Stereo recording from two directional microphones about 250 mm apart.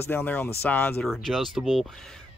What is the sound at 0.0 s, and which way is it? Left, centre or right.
Speech, centre.